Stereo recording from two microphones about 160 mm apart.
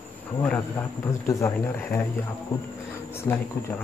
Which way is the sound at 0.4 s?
10° left (ahead or behind).